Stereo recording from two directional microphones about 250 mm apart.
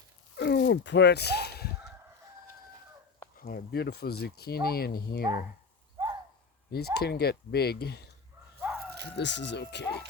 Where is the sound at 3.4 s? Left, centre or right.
Left.